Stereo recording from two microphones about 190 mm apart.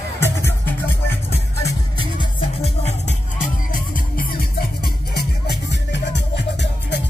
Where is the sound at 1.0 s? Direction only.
15° left (ahead or behind).